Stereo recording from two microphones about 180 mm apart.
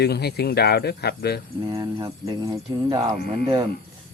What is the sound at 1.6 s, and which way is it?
Speech, 25° right (ahead or behind).